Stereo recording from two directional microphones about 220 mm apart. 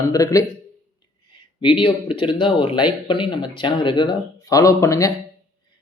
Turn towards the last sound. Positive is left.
turn(degrees=15)  # may be behind; listen again after turning